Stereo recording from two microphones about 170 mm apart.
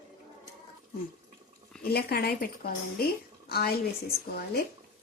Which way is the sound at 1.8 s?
65° left (ahead or behind).